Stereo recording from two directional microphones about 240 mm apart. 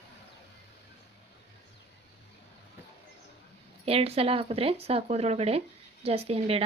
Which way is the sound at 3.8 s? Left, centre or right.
Right.